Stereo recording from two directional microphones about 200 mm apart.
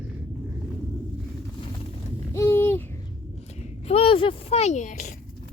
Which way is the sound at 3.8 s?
30° left (ahead or behind).